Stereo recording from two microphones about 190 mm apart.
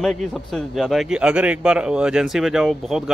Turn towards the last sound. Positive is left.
turn(degrees=0)  # may be behind; listen again after turning